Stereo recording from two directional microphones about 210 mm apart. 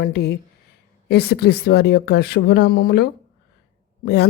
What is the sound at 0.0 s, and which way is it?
Speech, 50° left (ahead or behind).